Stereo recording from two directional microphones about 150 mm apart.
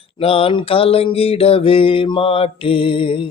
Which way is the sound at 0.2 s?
40° left (ahead or behind).